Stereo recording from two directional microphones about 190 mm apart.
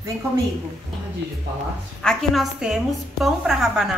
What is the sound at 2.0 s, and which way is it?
A woman's voice, centre (ahead or behind).